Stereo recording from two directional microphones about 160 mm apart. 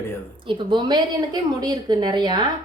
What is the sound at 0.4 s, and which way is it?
A woman's voice, 30° right (ahead or behind).